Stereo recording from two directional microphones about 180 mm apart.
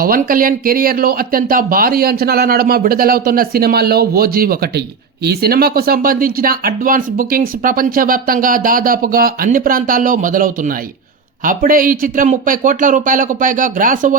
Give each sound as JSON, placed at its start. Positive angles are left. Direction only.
{"t": 0.0, "sound": "speech", "side_deg": -50}